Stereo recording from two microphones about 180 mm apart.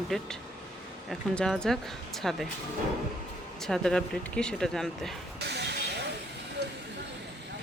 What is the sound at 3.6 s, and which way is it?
Speech, 5° left (ahead or behind).